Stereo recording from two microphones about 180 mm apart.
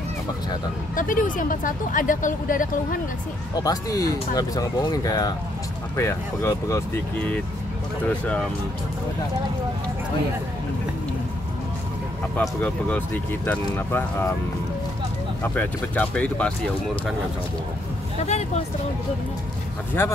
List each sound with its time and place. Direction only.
0.9 s speech: 50° left (ahead or behind)
3.5 s speech: 20° left (ahead or behind)
12.4 s speech: 10° left (ahead or behind)
15.4 s speech: 10° left (ahead or behind)
18.2 s speech: 40° left (ahead or behind)
20.0 s speech: 15° left (ahead or behind)